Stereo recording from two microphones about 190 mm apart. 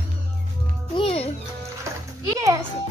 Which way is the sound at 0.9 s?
30° left (ahead or behind).